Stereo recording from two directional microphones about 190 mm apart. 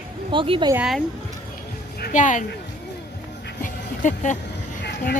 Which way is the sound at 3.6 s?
40° left (ahead or behind).